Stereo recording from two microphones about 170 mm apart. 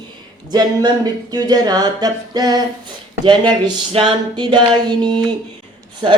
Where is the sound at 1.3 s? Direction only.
25° right (ahead or behind).